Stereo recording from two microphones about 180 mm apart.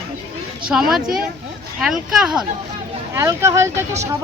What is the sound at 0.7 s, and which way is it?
Speech, 5° right (ahead or behind).